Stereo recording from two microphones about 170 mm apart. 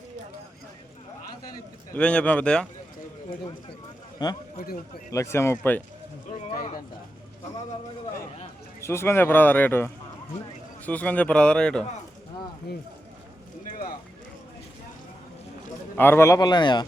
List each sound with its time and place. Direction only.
2.0 s a man's voice: 5° left (ahead or behind)
4.2 s a man's voice: 25° left (ahead or behind)
4.5 s a man's voice: 60° left (ahead or behind)
5.1 s a man's voice: 15° left (ahead or behind)
8.8 s a man's voice: 15° left (ahead or behind)
16.0 s a man's voice: 15° left (ahead or behind)